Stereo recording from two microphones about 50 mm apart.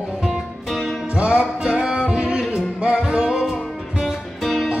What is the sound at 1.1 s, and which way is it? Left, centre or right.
Music, right.